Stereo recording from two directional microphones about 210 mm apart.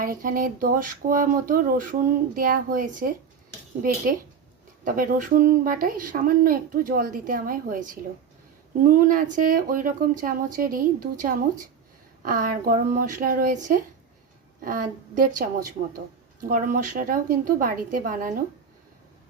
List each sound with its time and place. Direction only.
0.0 s a woman's voice: 40° right (ahead or behind)
4.8 s a woman's voice: 40° right (ahead or behind)